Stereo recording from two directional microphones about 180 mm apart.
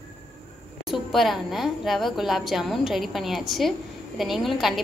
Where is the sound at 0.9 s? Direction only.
Centre (ahead or behind).